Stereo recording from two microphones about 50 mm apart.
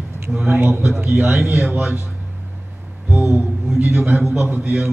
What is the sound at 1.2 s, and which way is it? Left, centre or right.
Speech, right.